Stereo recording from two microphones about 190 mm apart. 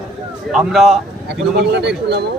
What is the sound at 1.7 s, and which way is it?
Speech, 60° right (ahead or behind).